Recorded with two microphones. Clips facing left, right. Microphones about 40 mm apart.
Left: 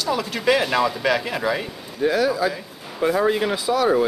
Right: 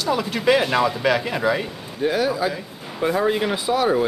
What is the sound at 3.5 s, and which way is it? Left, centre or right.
Speech, right.